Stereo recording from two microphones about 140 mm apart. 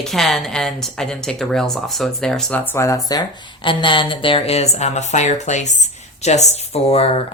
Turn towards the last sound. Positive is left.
turn(degrees=45)  # may be behind; listen again after turning